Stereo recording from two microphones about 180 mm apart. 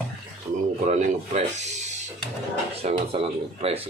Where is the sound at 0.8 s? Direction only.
40° right (ahead or behind).